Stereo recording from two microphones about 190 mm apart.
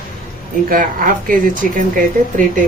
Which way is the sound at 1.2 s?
45° right (ahead or behind).